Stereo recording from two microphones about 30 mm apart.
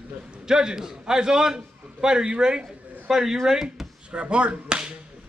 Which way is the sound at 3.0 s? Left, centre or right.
Centre.